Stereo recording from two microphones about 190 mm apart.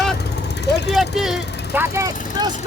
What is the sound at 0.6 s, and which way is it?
Speech, 65° left (ahead or behind).